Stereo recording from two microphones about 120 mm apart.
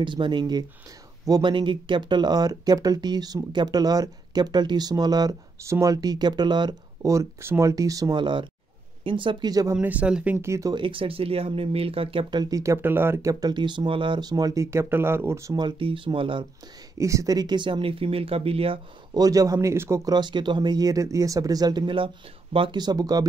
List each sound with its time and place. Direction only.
0.0 s speech: 40° right (ahead or behind)
7.1 s speech: 25° right (ahead or behind)
9.8 s speech: 10° right (ahead or behind)
10.7 s speech: 45° right (ahead or behind); by 15.5 s 20° right (ahead or behind)
15.5 s speech: 40° right (ahead or behind)
17.0 s speech: 25° right (ahead or behind); by 18.8 s 55° right (ahead or behind)
19.1 s speech: 30° right (ahead or behind)
20.1 s speech: 40° right (ahead or behind)